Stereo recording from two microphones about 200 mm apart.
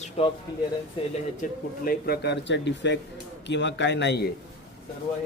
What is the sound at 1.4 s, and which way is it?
Speech, 50° left (ahead or behind).